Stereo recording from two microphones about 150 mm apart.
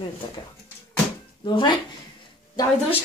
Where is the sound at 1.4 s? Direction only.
30° left (ahead or behind).